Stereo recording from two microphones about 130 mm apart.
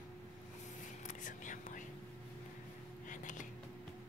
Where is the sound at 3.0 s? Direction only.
80° left.